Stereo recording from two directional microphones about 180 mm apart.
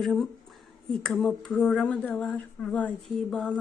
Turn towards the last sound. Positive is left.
turn(degrees=5)  # may be behind; listen again after turning